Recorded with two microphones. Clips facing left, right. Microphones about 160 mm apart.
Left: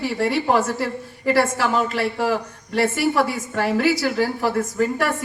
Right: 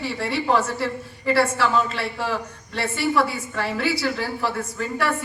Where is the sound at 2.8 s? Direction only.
50° left (ahead or behind).